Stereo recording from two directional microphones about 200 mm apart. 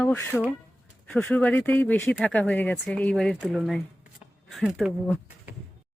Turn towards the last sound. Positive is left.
turn(degrees=0)  # may be behind; listen again after turning